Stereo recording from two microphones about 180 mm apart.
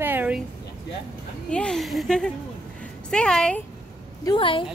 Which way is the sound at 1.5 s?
5° left (ahead or behind).